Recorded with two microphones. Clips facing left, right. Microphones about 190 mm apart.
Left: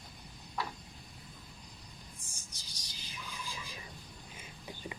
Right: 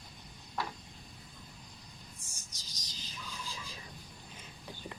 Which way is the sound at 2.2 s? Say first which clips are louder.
Left 1 dB; 55° left (ahead or behind).